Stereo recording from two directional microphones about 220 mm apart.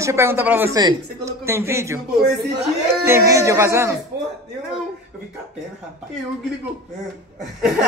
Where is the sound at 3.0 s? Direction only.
15° right (ahead or behind).